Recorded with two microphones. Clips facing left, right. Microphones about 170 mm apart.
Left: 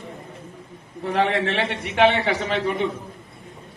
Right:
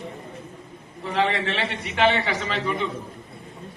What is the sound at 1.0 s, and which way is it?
A man's voice, 55° left (ahead or behind).